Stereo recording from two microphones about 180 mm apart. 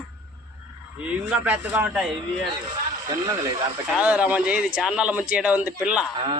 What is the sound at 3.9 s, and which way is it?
Speech, 5° right (ahead or behind).